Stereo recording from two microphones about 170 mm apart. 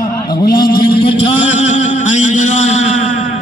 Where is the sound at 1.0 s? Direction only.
35° left (ahead or behind).